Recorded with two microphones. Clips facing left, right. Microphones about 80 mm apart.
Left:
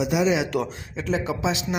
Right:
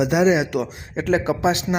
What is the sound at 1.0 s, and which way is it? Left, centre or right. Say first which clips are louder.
Speech: right 6 dB; right.